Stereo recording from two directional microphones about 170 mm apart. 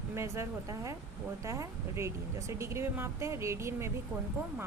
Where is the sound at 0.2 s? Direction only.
15° right (ahead or behind).